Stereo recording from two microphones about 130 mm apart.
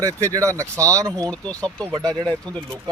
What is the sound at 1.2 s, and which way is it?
Speech, 10° left (ahead or behind).